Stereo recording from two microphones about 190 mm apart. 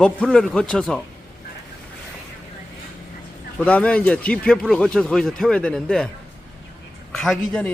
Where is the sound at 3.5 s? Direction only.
10° left (ahead or behind).